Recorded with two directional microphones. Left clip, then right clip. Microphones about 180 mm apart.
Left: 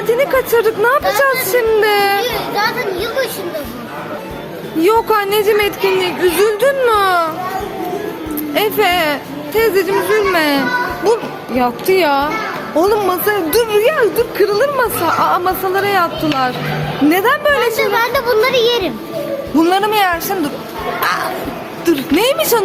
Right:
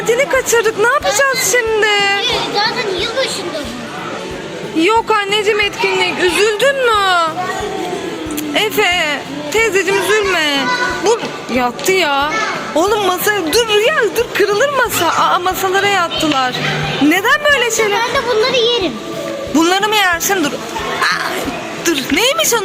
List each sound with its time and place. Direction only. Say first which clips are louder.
0.1 s speech: even; 5° left (ahead or behind)
4.8 s speech: even; centre (ahead or behind)
8.8 s a woman's voice: left 2 dB; 10° right (ahead or behind); by 16.5 s 10° left (ahead or behind)
17.1 s a woman's voice: right 1 dB; 5° right (ahead or behind)
18.0 s speech: left 1 dB; 15° left (ahead or behind)
18.5 s speech: even; centre (ahead or behind)
21.8 s speech: left 1 dB; 5° right (ahead or behind)